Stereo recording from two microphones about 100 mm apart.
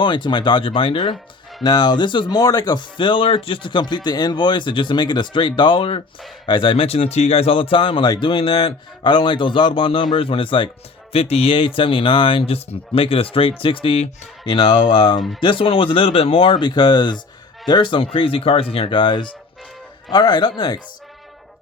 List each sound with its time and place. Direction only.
0.0 s speech: 50° left (ahead or behind)
1.6 s a man's voice: 45° left (ahead or behind); by 10.7 s 60° left (ahead or behind)
11.1 s a man's voice: 85° left; by 15.2 s 50° left (ahead or behind)
15.4 s a man's voice: 60° left (ahead or behind)